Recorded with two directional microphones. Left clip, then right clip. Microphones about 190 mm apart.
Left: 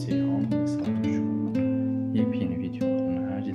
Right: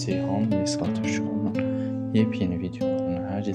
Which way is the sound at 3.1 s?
35° right (ahead or behind).